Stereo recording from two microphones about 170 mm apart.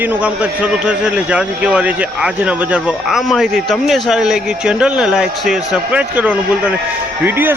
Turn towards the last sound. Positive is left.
turn(degrees=-10)  # may be behind; listen again after turning